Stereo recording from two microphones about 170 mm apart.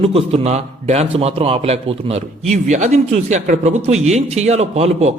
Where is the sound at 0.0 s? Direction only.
35° right (ahead or behind).